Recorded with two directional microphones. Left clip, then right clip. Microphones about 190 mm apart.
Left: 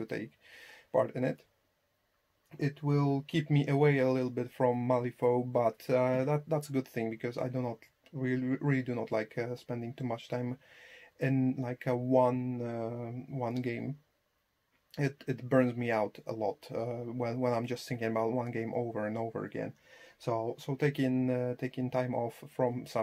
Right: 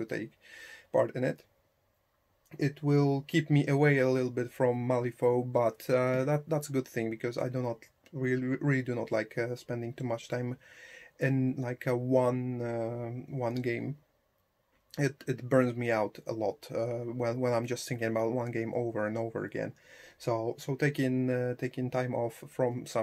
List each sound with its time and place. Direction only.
0.0 s speech: centre (ahead or behind)
2.5 s speech: 10° right (ahead or behind)
14.9 s speech: 5° right (ahead or behind)